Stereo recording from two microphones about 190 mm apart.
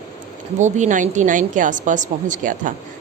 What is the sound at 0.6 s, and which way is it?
Speech, 40° right (ahead or behind).